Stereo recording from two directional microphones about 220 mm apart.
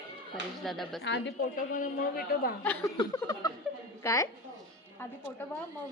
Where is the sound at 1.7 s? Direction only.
40° left (ahead or behind).